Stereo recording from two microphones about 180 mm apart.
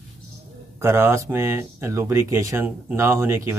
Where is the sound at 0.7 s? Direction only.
15° right (ahead or behind).